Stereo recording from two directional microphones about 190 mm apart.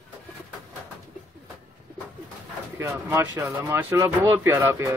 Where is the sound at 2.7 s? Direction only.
15° right (ahead or behind).